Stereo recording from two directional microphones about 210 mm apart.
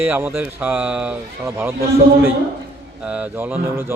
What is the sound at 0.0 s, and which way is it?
A man's voice, 10° right (ahead or behind).